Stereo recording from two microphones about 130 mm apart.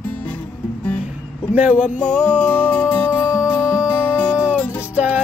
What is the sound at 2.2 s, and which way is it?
Music, 10° left (ahead or behind).